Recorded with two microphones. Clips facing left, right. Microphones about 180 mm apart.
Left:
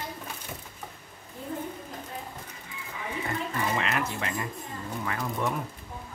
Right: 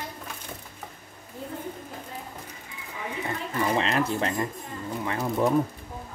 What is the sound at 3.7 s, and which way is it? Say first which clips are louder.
Speech: right 5 dB; 30° right (ahead or behind).